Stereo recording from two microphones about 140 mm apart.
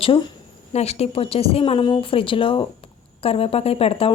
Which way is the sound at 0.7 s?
50° left (ahead or behind).